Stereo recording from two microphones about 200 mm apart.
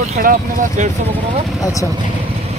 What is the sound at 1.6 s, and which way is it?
Speech, 15° left (ahead or behind).